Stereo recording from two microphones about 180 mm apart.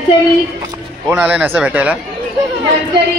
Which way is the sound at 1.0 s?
5° right (ahead or behind).